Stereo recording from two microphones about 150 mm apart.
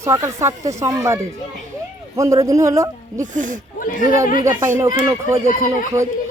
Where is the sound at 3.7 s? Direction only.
65° left (ahead or behind).